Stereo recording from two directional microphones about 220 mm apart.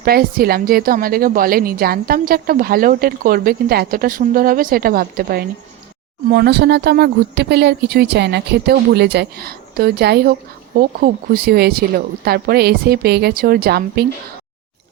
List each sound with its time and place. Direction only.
0.0 s a woman's voice: 40° right (ahead or behind)